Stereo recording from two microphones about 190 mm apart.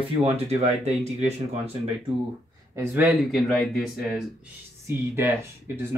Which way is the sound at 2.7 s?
15° right (ahead or behind).